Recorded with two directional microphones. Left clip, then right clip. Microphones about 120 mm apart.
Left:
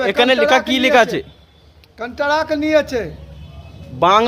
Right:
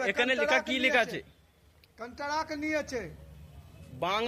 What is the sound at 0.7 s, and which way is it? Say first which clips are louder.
Speech: left 14 dB; 20° left (ahead or behind).